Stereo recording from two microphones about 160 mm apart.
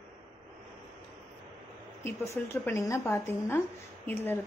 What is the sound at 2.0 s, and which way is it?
A woman's voice, 15° left (ahead or behind).